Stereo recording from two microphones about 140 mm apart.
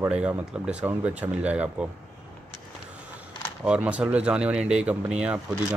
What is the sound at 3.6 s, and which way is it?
Speech, 10° right (ahead or behind).